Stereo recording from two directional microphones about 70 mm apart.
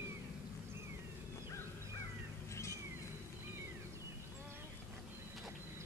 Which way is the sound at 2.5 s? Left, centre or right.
Left.